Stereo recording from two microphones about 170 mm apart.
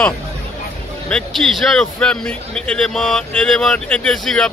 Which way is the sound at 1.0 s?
5° left (ahead or behind).